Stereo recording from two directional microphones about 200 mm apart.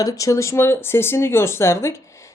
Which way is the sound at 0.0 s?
15° left (ahead or behind).